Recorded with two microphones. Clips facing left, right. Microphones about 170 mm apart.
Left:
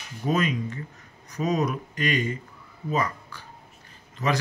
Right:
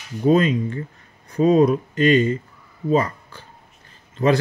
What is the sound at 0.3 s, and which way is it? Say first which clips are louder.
Speech: right 8 dB; 30° right (ahead or behind).